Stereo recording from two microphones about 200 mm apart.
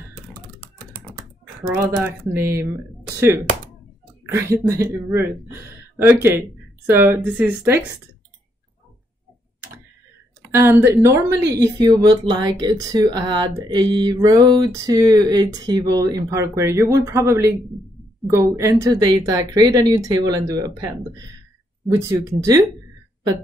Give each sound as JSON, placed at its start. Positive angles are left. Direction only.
{"t": 1.7, "sound": "a woman's voice", "side_deg": -10}
{"t": 4.6, "sound": "a woman's voice", "side_deg": -15}
{"t": 10.4, "sound": "a woman's voice", "side_deg": -10}